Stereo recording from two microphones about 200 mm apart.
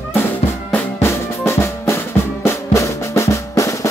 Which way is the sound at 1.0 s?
15° left (ahead or behind).